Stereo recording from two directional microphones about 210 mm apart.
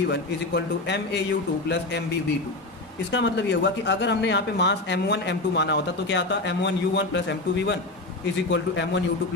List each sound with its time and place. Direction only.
0.1 s speech: 55° left (ahead or behind)
3.1 s speech: 60° left (ahead or behind)